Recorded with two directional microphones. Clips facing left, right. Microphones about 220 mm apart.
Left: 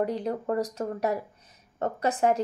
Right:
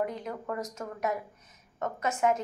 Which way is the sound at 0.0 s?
35° left (ahead or behind).